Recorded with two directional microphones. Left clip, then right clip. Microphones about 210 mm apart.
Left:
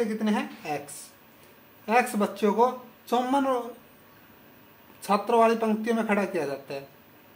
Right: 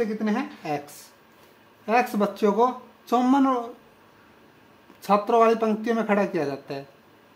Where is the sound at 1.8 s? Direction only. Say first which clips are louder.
Right 2 dB; 35° right (ahead or behind).